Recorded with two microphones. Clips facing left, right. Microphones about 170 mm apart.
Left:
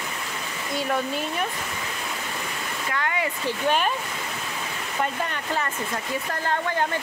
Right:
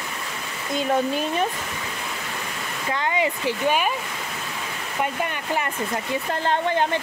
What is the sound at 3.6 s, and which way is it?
Speech, 10° right (ahead or behind).